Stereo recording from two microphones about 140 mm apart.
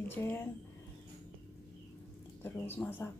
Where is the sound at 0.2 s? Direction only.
15° left (ahead or behind).